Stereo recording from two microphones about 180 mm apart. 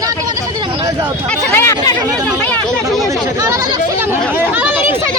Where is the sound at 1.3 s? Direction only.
15° left (ahead or behind).